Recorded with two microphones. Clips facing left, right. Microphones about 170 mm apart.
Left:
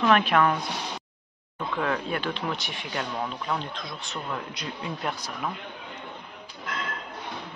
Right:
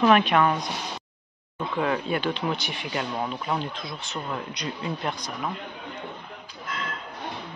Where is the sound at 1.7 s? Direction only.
5° right (ahead or behind).